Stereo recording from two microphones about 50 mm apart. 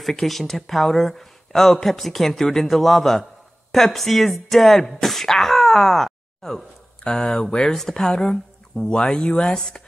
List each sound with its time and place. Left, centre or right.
0.0 s speech: centre